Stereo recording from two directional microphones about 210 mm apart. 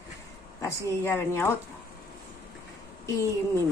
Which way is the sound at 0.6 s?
10° left (ahead or behind).